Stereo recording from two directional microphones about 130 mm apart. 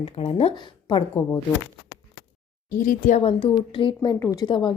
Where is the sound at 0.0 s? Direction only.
50° left (ahead or behind).